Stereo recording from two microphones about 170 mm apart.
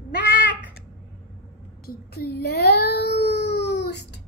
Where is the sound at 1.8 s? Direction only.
65° left (ahead or behind); by 4.0 s 80° left.